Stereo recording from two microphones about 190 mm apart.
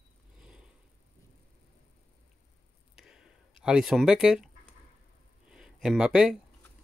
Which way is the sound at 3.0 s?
5° right (ahead or behind).